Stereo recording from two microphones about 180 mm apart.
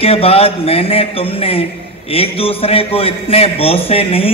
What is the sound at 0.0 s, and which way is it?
A man's voice, 30° left (ahead or behind).